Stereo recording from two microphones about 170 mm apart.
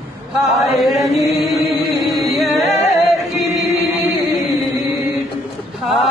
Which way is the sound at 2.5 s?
40° left (ahead or behind).